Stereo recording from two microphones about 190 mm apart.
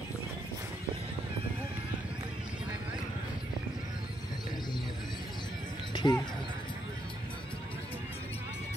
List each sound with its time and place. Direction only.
5.9 s music: 25° left (ahead or behind)